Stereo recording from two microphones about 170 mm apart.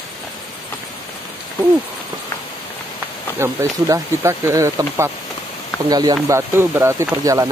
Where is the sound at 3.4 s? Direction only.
15° right (ahead or behind).